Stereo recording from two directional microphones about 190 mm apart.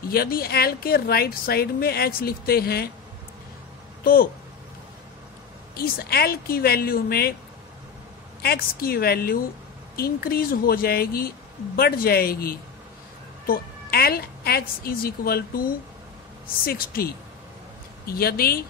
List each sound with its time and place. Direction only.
0.1 s a woman's voice: 50° left (ahead or behind)
4.0 s speech: 50° left (ahead or behind)
5.8 s a woman's voice: 55° left (ahead or behind)
8.4 s a woman's voice: 55° left (ahead or behind)
16.6 s a woman's voice: 50° left (ahead or behind)